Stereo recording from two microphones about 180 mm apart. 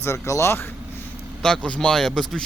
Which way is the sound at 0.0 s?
15° left (ahead or behind).